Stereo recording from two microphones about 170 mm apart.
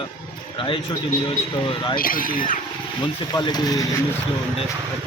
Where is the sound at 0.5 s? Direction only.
30° left (ahead or behind).